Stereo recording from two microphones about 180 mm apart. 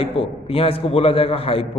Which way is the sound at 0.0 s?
30° left (ahead or behind).